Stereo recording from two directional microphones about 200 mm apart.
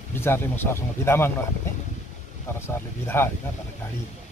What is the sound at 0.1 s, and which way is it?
Speech, 10° left (ahead or behind).